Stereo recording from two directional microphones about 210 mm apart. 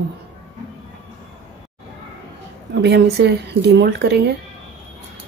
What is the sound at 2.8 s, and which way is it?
A woman's voice, 55° right (ahead or behind).